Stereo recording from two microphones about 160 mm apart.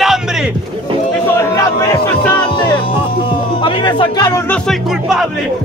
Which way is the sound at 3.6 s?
30° left (ahead or behind).